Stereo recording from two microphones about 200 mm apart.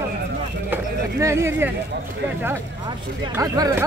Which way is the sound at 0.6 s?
10° right (ahead or behind).